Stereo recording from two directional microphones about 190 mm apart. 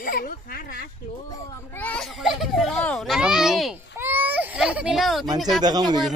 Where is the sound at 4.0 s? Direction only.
10° right (ahead or behind).